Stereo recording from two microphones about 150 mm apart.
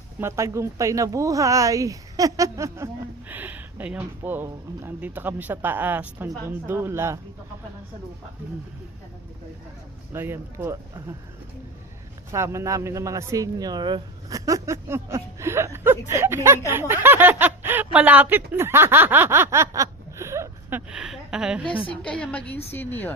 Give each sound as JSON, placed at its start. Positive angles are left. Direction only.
{"t": 0.2, "sound": "speech", "side_deg": -20}
{"t": 10.1, "sound": "speech", "side_deg": -15}
{"t": 12.3, "sound": "speech", "side_deg": -20}
{"t": 21.8, "sound": "a woman's voice", "side_deg": 5}